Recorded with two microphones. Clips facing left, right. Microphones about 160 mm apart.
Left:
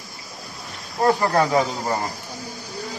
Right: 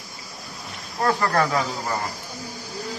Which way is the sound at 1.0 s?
20° left (ahead or behind).